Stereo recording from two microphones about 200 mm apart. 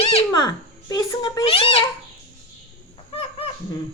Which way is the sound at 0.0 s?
30° left (ahead or behind).